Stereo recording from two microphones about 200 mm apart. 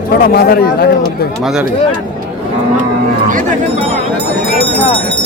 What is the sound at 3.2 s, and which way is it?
Speech, 40° right (ahead or behind).